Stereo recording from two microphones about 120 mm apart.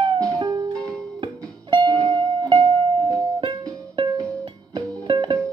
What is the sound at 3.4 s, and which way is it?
Music, 30° right (ahead or behind).